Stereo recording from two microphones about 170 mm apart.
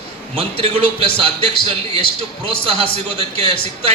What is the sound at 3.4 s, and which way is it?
Speech, 35° right (ahead or behind).